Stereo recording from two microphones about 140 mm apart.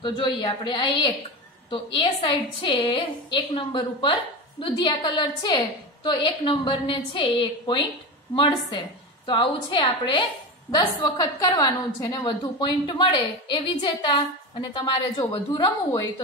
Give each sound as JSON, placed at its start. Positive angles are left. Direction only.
{"t": 0.0, "sound": "a woman's voice", "side_deg": 35}